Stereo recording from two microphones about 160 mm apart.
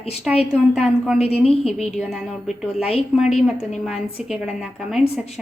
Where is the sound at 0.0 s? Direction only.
40° left (ahead or behind).